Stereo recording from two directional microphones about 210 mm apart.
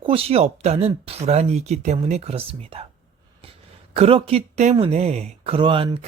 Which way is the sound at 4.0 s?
25° right (ahead or behind).